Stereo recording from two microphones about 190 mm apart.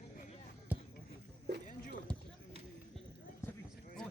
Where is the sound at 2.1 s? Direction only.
5° left (ahead or behind).